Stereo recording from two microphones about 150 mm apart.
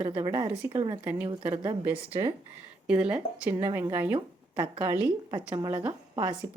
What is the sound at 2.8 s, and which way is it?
A woman's voice, 5° right (ahead or behind).